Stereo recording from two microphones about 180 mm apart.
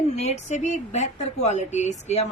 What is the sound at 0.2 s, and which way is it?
A woman's voice, 40° left (ahead or behind).